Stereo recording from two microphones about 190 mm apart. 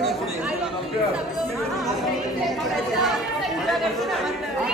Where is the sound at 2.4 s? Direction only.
Centre (ahead or behind).